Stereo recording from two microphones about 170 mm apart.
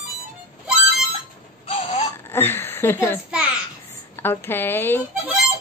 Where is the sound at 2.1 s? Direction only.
15° left (ahead or behind).